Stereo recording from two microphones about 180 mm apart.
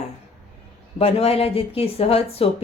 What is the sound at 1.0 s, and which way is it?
A woman's voice, 35° left (ahead or behind).